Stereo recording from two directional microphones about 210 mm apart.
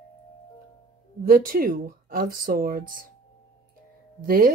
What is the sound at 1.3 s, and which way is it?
Speech, 40° right (ahead or behind).